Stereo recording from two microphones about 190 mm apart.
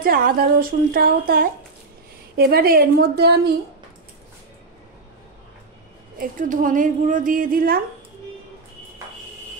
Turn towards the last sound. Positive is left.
turn(degrees=-50)  # may be behind; listen again after turning